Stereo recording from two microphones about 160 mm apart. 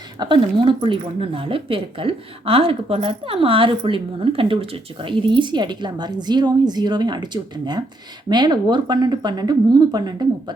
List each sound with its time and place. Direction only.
0.2 s speech: 30° right (ahead or behind)